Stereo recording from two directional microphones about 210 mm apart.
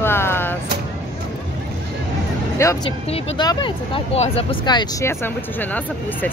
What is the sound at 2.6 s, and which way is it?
Speech, 15° left (ahead or behind).